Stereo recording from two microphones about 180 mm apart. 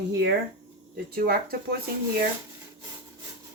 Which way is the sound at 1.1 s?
55° right (ahead or behind).